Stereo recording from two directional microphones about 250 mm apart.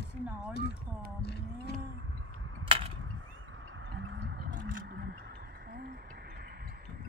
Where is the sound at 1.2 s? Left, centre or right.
Left.